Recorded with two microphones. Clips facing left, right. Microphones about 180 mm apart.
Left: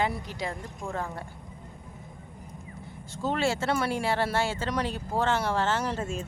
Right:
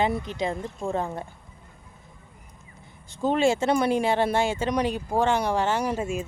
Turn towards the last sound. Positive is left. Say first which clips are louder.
# right 4 dB
turn(degrees=-10)  # may be behind; listen again after turning